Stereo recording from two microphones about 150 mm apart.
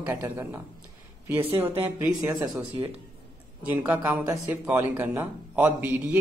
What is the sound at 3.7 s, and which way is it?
A man's voice, 10° right (ahead or behind).